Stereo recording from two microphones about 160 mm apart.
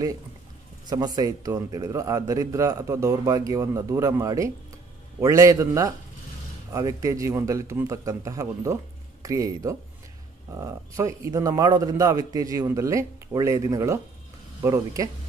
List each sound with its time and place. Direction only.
0.8 s a man's voice: 25° right (ahead or behind)